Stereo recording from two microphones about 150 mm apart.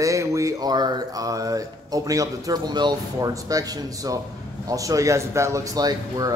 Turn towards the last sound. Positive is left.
turn(degrees=-25)  # may be behind; listen again after turning